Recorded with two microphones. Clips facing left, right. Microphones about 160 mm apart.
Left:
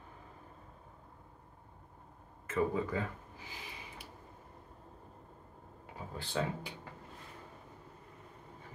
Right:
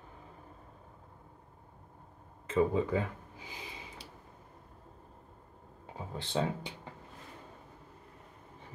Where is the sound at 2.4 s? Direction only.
20° right (ahead or behind).